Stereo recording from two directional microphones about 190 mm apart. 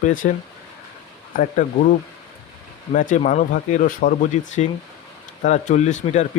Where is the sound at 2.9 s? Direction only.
45° left (ahead or behind).